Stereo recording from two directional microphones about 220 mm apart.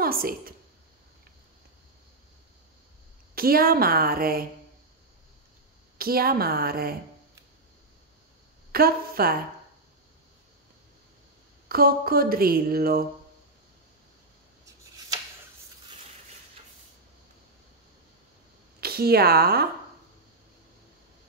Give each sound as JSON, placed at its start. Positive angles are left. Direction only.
{"t": 0.0, "sound": "a woman's voice", "side_deg": -40}
{"t": 3.3, "sound": "speech", "side_deg": -40}
{"t": 5.9, "sound": "speech", "side_deg": -45}
{"t": 8.7, "sound": "speech", "side_deg": -45}
{"t": 11.7, "sound": "speech", "side_deg": -40}
{"t": 18.8, "sound": "speech", "side_deg": -45}